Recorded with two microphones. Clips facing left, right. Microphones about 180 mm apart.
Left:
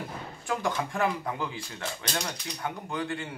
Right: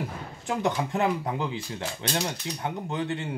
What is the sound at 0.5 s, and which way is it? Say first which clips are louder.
Speech: right 3 dB; 20° right (ahead or behind).